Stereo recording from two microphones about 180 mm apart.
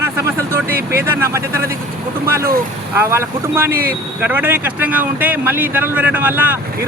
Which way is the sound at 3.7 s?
55° right (ahead or behind).